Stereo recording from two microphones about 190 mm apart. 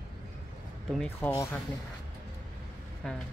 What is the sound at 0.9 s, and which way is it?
Speech, 10° left (ahead or behind).